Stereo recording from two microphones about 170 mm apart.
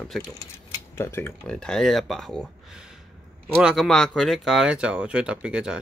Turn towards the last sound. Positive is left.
turn(degrees=-5)  # may be behind; listen again after turning